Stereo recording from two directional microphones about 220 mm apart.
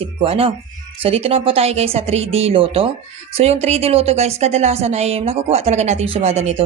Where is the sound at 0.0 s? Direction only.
25° right (ahead or behind).